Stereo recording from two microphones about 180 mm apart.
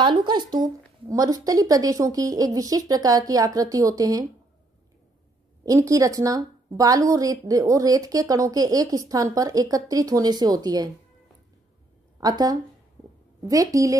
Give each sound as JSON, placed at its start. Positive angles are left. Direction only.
{"t": 0.0, "sound": "speech", "side_deg": -25}
{"t": 5.7, "sound": "speech", "side_deg": -20}
{"t": 12.2, "sound": "speech", "side_deg": -20}